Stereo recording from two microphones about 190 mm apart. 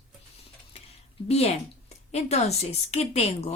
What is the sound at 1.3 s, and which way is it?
A woman's voice, 35° left (ahead or behind).